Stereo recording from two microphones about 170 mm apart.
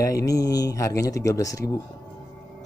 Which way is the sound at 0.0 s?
20° left (ahead or behind).